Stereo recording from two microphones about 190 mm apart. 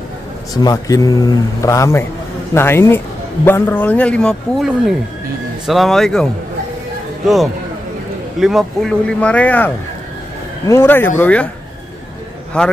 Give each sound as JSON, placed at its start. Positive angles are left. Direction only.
{"t": 0.6, "sound": "a man's voice", "side_deg": 20}
{"t": 8.4, "sound": "a man's voice", "side_deg": 0}
{"t": 10.7, "sound": "a man's voice", "side_deg": 10}
{"t": 12.6, "sound": "speech", "side_deg": 5}